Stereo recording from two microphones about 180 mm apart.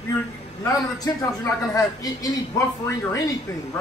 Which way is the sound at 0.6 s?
20° left (ahead or behind).